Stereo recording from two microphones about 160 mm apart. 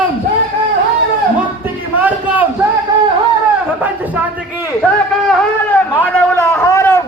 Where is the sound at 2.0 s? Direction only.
10° right (ahead or behind).